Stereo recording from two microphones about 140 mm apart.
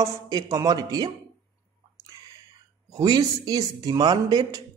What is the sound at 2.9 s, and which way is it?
A man's voice, 25° right (ahead or behind).